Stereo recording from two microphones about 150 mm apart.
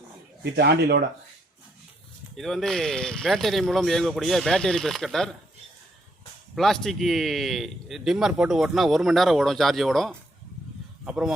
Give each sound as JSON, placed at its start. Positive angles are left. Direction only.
{"t": 0.5, "sound": "speech", "side_deg": -90}
{"t": 2.3, "sound": "speech", "side_deg": 0}
{"t": 6.6, "sound": "speech", "side_deg": 0}